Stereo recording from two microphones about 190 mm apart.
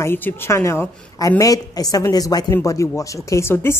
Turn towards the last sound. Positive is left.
turn(degrees=10)  # may be behind; listen again after turning